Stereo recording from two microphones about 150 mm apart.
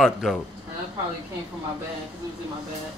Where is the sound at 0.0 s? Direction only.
Centre (ahead or behind).